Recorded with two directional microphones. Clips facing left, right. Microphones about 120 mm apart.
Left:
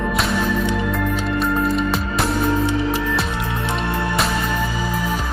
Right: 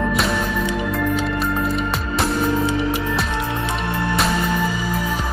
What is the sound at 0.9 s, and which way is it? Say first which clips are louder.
Music: even; centre (ahead or behind).